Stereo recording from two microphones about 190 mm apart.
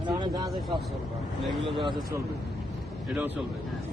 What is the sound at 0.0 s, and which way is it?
Vehicle, 20° right (ahead or behind).